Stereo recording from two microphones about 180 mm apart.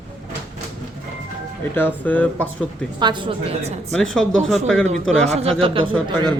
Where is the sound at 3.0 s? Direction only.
25° right (ahead or behind).